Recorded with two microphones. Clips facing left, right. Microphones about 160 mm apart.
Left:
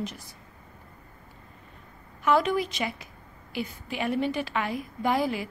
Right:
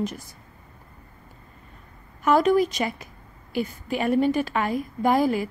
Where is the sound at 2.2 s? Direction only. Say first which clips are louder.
Right 5 dB; 45° right (ahead or behind).